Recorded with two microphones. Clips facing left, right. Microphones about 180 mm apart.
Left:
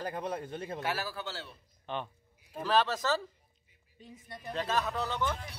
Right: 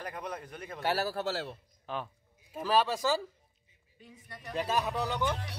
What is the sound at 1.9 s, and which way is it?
Speech, 5° right (ahead or behind).